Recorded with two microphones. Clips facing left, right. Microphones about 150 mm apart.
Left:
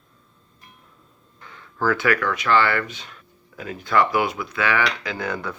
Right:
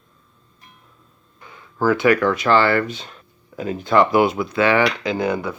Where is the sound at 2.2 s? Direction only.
30° right (ahead or behind).